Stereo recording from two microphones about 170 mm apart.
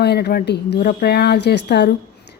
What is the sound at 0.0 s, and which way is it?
A woman's voice, 75° left (ahead or behind).